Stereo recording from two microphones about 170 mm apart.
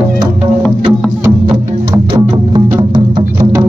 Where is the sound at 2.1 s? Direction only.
30° right (ahead or behind).